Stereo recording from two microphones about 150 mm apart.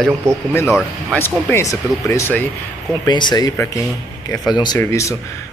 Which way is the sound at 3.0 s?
30° left (ahead or behind).